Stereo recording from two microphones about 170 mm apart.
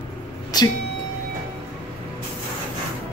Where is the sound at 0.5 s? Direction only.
25° left (ahead or behind).